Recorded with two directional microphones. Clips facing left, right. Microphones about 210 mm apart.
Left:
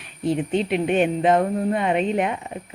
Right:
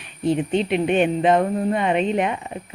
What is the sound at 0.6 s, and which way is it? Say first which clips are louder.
Speech: even; 5° left (ahead or behind).